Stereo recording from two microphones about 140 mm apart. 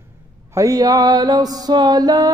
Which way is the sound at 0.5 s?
25° right (ahead or behind).